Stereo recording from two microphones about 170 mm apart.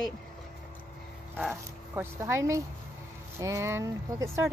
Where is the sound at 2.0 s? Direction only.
15° right (ahead or behind).